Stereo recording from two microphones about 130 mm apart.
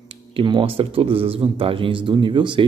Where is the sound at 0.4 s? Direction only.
40° right (ahead or behind).